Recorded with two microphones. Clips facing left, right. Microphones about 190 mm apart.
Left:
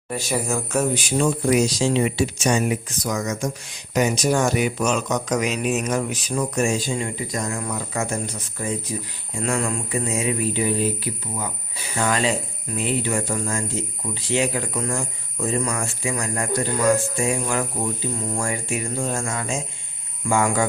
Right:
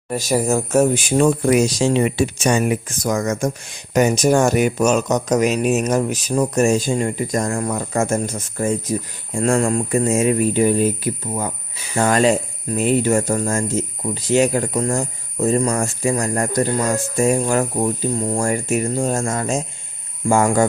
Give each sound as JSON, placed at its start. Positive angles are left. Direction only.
{"t": 0.1, "sound": "speech", "side_deg": -40}